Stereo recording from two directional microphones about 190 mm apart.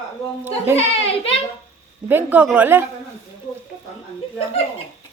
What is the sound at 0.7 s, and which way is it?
Speech, 30° left (ahead or behind).